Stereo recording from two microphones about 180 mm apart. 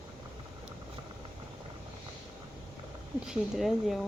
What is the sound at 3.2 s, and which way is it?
Speech, centre (ahead or behind).